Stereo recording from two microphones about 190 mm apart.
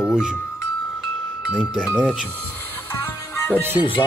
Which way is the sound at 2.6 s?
10° left (ahead or behind).